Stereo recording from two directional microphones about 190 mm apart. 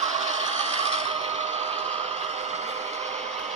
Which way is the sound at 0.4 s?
35° right (ahead or behind).